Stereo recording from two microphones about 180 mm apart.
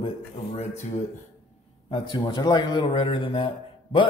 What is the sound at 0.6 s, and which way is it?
Speech, 40° left (ahead or behind).